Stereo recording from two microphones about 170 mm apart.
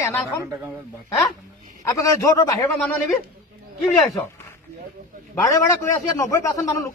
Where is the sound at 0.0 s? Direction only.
15° left (ahead or behind).